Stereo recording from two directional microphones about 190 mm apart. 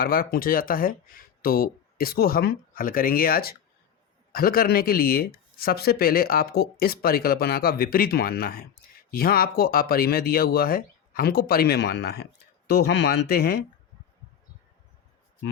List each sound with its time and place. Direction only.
0.0 s speech: 50° left (ahead or behind)